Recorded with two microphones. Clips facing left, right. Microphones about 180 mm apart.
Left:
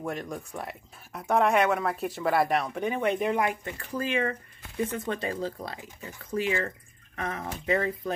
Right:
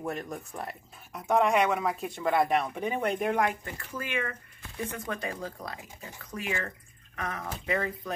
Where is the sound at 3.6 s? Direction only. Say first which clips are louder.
Left 5 dB; 35° left (ahead or behind).